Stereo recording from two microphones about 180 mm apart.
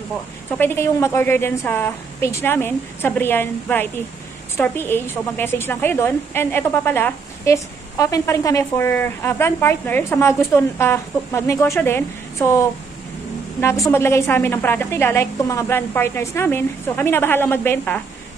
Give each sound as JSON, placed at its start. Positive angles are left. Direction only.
{"t": 0.6, "sound": "a woman's voice", "side_deg": 15}
{"t": 13.8, "sound": "a woman's voice", "side_deg": 15}